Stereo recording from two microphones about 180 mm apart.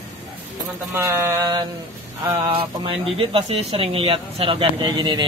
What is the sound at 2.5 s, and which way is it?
Speech, 30° right (ahead or behind).